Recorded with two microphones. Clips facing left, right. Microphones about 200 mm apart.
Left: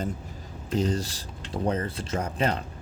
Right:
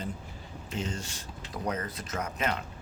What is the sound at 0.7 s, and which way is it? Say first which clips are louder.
Speech: left 9 dB; 35° left (ahead or behind).